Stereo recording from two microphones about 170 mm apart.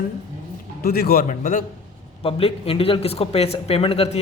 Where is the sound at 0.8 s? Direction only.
65° left (ahead or behind).